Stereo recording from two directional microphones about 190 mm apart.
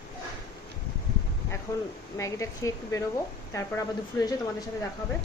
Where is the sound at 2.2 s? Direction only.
15° left (ahead or behind).